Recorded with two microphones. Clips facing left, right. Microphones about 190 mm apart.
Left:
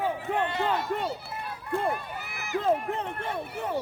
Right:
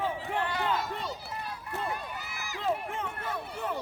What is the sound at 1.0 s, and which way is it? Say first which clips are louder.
Speech: left 5 dB; 60° left (ahead or behind).